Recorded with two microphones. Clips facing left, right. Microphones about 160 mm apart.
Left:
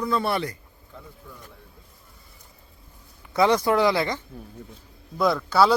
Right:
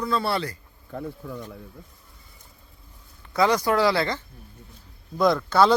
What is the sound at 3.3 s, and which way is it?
Speech, 20° left (ahead or behind).